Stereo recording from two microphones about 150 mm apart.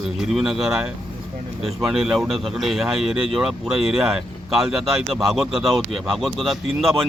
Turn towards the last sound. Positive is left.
turn(degrees=0)  # may be behind; listen again after turning